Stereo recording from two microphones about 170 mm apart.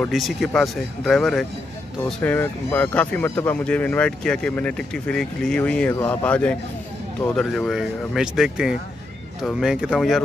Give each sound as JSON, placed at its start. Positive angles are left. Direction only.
{"t": 0.0, "sound": "speech", "side_deg": 0}